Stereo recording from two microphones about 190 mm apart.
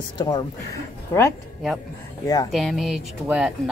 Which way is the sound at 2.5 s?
Centre (ahead or behind).